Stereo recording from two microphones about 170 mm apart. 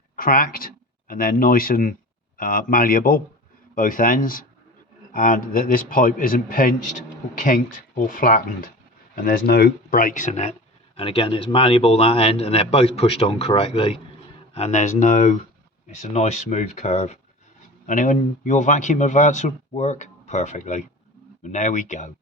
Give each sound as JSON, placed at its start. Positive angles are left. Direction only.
{"t": 0.2, "sound": "a man's voice", "side_deg": 55}
{"t": 10.9, "sound": "a man's voice", "side_deg": 30}